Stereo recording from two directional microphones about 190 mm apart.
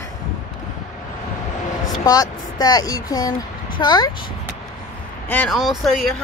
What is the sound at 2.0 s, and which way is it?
Speech, 20° left (ahead or behind).